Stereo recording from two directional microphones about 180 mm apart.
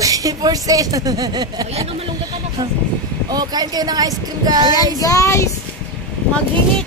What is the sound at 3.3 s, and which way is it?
Speech, 20° right (ahead or behind).